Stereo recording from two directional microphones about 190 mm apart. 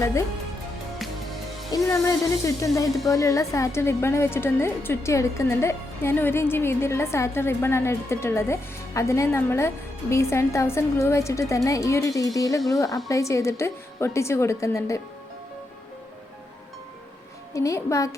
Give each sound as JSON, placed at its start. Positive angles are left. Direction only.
{"t": 1.7, "sound": "a woman's voice", "side_deg": 15}
{"t": 17.5, "sound": "a woman's voice", "side_deg": 15}